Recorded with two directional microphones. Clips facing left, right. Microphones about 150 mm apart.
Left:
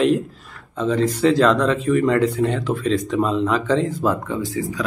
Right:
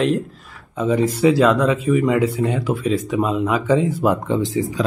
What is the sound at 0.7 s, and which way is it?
Speech, 10° right (ahead or behind).